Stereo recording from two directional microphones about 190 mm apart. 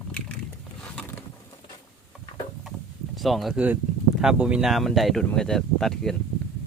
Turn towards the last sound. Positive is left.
turn(degrees=0)  # may be behind; listen again after turning